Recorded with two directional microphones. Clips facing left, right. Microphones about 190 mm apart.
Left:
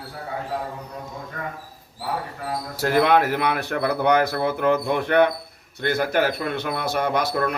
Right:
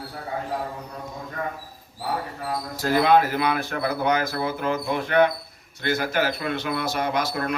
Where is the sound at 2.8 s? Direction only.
65° left (ahead or behind).